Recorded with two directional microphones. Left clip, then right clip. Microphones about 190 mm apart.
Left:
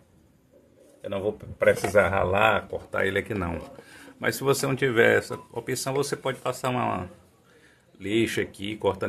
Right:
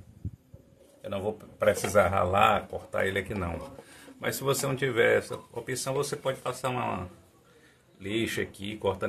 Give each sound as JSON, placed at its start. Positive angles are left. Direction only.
{"t": 1.0, "sound": "speech", "side_deg": 40}